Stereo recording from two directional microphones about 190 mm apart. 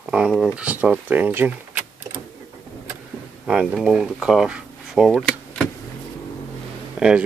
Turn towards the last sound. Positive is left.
turn(degrees=-5)  # may be behind; listen again after turning